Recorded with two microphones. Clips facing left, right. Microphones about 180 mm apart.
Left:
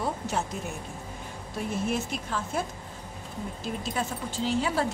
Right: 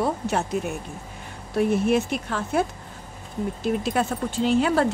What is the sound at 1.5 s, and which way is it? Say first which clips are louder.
Speech: right 9 dB; 65° right (ahead or behind).